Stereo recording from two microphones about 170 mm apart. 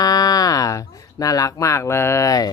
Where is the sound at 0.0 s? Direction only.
20° left (ahead or behind).